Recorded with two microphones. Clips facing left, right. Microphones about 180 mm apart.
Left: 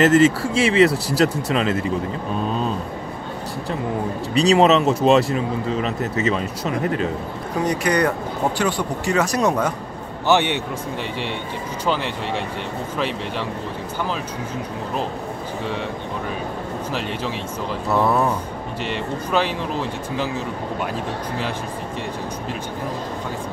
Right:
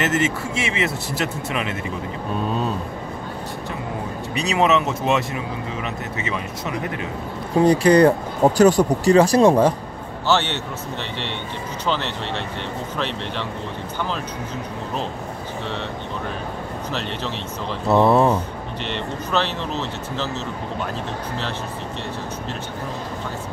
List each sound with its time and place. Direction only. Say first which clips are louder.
0.0 s speech: left 7 dB; 35° left (ahead or behind)
4.3 s speech: left 4 dB; 30° left (ahead or behind)
7.6 s speech: right 7 dB; 30° right (ahead or behind)
8.5 s speech: right 8 dB; 40° right (ahead or behind)
10.2 s speech: left 3 dB; 15° left (ahead or behind)
11.8 s speech: left 1 dB; 10° left (ahead or behind)
17.8 s speech: right 4 dB; 25° right (ahead or behind)
18.9 s speech: left 2 dB; 10° left (ahead or behind)